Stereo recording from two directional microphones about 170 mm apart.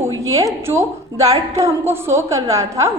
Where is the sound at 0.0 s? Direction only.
20° right (ahead or behind).